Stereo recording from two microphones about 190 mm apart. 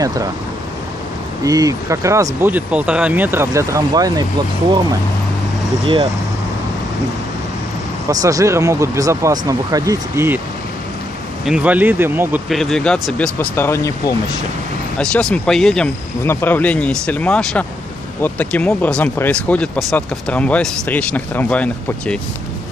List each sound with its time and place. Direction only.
0.0 s speech: 20° right (ahead or behind)
1.4 s speech: 20° right (ahead or behind)
8.1 s speech: 20° right (ahead or behind)
11.4 s speech: 5° right (ahead or behind)
12.4 s speech: centre (ahead or behind)
15.0 s speech: 5° left (ahead or behind)